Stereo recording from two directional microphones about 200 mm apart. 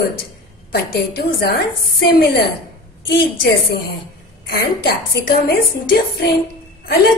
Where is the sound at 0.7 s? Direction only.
55° left (ahead or behind).